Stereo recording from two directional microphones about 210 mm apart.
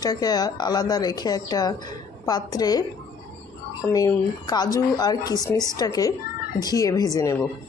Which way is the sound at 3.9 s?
15° left (ahead or behind).